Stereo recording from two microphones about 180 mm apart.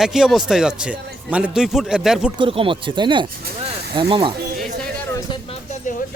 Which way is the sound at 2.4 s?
30° right (ahead or behind).